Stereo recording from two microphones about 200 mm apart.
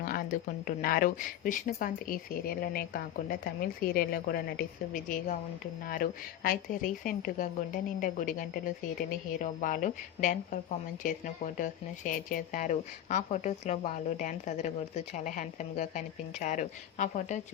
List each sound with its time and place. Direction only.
0.0 s a woman's voice: 45° left (ahead or behind)